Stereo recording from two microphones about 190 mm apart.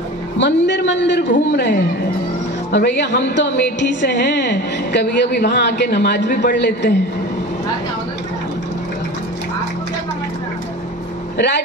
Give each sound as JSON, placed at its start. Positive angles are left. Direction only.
{"t": 0.4, "sound": "a woman's voice", "side_deg": 65}
{"t": 11.3, "sound": "speech", "side_deg": 60}